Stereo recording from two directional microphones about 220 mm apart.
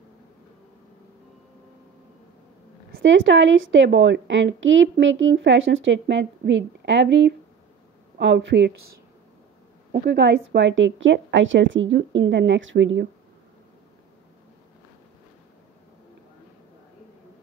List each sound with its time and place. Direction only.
3.0 s a woman's voice: 60° right (ahead or behind)
10.0 s a woman's voice: 50° right (ahead or behind)